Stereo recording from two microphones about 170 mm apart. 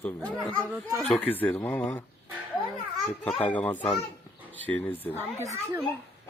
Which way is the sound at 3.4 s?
10° left (ahead or behind).